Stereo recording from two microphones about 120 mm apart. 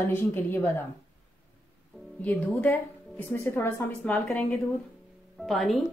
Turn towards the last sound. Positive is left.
turn(degrees=0)  # may be behind; listen again after turning